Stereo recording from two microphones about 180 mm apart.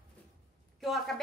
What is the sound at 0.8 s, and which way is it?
Speech, centre (ahead or behind).